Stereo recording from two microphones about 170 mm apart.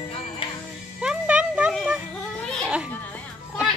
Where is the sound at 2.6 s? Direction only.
5° right (ahead or behind).